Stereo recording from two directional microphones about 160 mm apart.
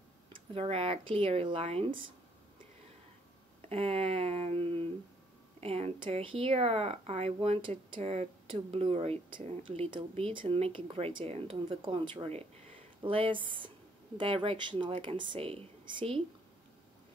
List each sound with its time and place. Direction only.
0.5 s speech: 35° right (ahead or behind)
3.6 s speech: 40° right (ahead or behind)
9.6 s speech: 35° right (ahead or behind)